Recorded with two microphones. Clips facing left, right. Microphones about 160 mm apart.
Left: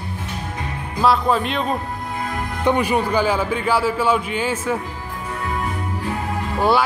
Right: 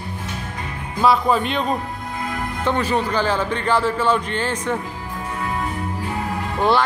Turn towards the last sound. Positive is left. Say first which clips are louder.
# even
turn(degrees=10)  # may be behind; listen again after turning